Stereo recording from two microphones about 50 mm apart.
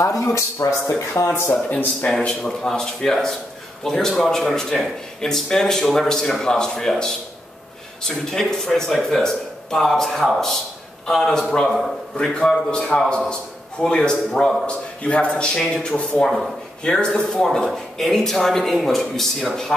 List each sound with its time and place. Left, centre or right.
0.0 s speech: left
1.5 s speech: left
2.2 s a man's voice: centre
17.6 s a man's voice: centre